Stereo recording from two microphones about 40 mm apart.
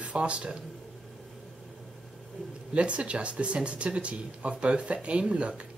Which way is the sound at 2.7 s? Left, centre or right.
Right.